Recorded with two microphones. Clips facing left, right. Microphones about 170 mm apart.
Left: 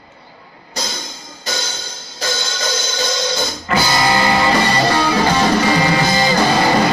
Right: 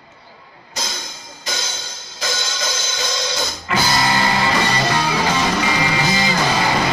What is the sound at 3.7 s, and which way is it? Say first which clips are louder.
Music: left 3 dB; 40° left (ahead or behind).